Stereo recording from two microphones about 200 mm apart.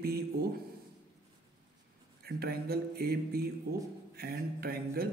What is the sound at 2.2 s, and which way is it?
A man's voice, 50° right (ahead or behind).